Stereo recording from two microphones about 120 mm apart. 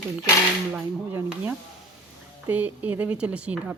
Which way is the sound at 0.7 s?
20° right (ahead or behind).